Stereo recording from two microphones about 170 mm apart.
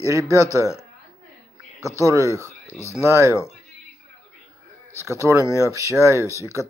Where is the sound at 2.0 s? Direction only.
20° right (ahead or behind).